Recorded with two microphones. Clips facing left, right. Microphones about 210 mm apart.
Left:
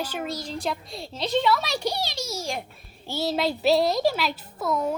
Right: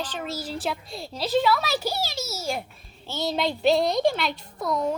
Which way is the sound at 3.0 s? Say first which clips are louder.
Left 1 dB; 10° left (ahead or behind).